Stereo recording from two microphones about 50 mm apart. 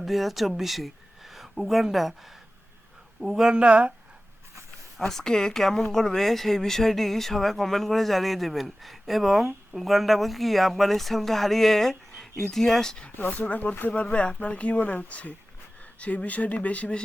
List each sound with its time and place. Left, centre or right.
0.0 s speech: centre
3.5 s speech: right
4.9 s speech: centre
13.1 s speech: left
13.9 s speech: left